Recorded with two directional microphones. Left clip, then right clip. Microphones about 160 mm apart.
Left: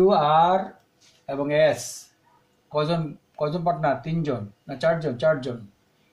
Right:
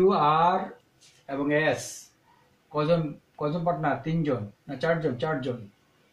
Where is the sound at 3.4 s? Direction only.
45° left (ahead or behind).